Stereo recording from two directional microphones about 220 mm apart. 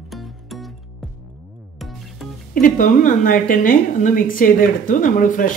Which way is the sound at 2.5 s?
40° left (ahead or behind).